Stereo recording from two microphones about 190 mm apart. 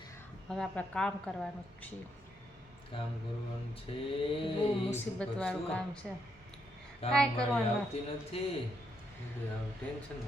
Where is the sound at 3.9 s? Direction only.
30° left (ahead or behind).